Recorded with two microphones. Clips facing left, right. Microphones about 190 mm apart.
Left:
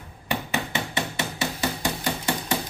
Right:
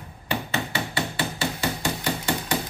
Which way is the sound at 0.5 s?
20° left (ahead or behind).